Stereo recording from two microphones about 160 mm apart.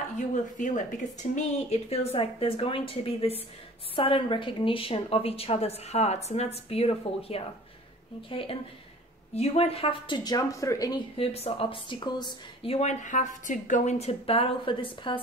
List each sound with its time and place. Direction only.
0.3 s speech: 50° left (ahead or behind); by 11.0 s 20° left (ahead or behind)
11.1 s speech: 40° left (ahead or behind)